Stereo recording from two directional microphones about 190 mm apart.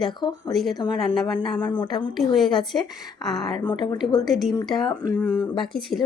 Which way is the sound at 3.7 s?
25° left (ahead or behind).